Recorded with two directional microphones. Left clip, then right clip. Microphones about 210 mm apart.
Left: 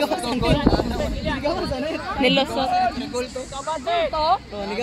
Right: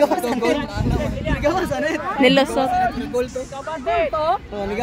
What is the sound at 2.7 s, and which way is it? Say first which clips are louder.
Speech: right 2 dB; 55° right (ahead or behind).